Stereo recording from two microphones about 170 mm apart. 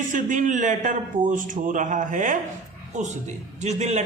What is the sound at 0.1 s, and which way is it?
A woman's voice, 50° right (ahead or behind).